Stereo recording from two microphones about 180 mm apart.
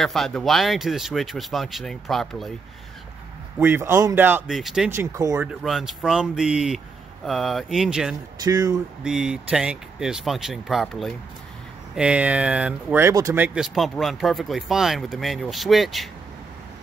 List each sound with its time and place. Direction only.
0.0 s speech: centre (ahead or behind)
3.5 s speech: 10° right (ahead or behind)
4.9 s speech: 15° right (ahead or behind)
5.6 s speech: centre (ahead or behind)
8.5 s speech: 20° right (ahead or behind)
9.0 s speech: 5° right (ahead or behind)
13.6 s speech: centre (ahead or behind)